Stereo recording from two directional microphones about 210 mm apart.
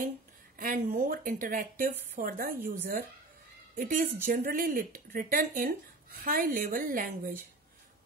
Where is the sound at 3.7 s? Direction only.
40° right (ahead or behind).